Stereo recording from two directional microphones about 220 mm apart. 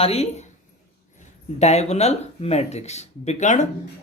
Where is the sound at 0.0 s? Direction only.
30° left (ahead or behind).